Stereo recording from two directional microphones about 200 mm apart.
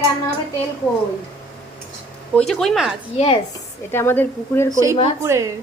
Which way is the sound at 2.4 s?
Centre (ahead or behind).